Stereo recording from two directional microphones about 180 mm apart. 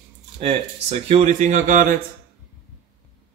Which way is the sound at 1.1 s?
45° right (ahead or behind).